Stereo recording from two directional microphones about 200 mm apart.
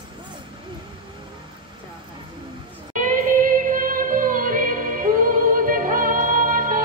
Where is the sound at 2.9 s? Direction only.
40° right (ahead or behind).